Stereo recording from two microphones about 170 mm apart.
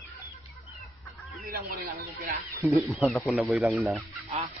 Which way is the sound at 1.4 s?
60° right (ahead or behind).